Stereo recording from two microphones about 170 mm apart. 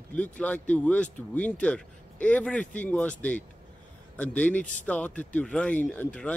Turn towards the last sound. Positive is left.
turn(degrees=10)  # may be behind; listen again after turning